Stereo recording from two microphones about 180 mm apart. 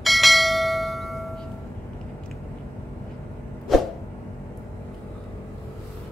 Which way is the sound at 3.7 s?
Centre (ahead or behind).